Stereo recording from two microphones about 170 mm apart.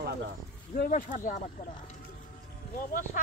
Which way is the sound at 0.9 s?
45° left (ahead or behind).